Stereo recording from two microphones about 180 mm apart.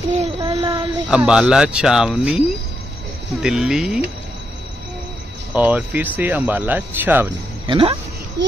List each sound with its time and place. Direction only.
0.4 s child singing: 30° right (ahead or behind)
1.1 s speech: 5° right (ahead or behind)
3.4 s speech: 5° right (ahead or behind)
5.5 s speech: 10° right (ahead or behind)
7.6 s speech: 30° right (ahead or behind)
8.4 s a sound: 75° right (ahead or behind)